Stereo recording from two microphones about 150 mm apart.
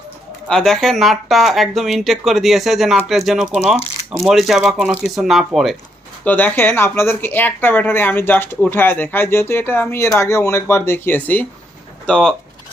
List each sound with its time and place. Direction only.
0.4 s speech: 5° left (ahead or behind)
6.2 s speech: 10° left (ahead or behind)